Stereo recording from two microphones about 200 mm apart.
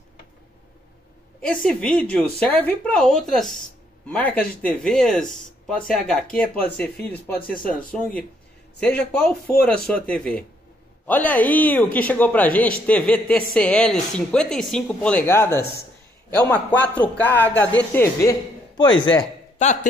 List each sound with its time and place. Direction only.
1.5 s a man's voice: 5° left (ahead or behind)
18.8 s a man's voice: 20° left (ahead or behind)
19.6 s a man's voice: 40° left (ahead or behind)